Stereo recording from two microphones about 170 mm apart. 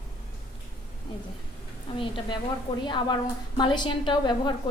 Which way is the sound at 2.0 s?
30° left (ahead or behind).